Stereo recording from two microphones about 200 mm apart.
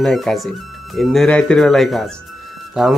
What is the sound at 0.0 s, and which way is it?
Speech, centre (ahead or behind).